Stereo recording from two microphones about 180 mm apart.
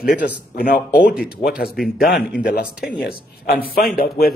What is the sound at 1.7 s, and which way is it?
Speech, centre (ahead or behind).